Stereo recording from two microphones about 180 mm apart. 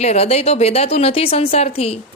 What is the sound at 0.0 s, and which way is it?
A woman's voice, 35° left (ahead or behind).